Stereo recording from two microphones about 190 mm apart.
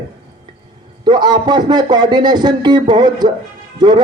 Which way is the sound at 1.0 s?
20° right (ahead or behind).